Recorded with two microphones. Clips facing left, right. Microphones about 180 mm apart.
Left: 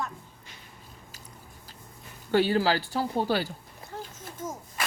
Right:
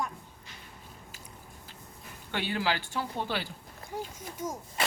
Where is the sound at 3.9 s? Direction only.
10° right (ahead or behind).